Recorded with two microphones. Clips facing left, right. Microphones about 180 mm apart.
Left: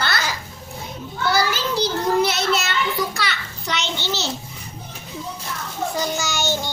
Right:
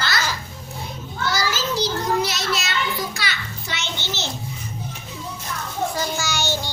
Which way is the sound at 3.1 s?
60° left (ahead or behind).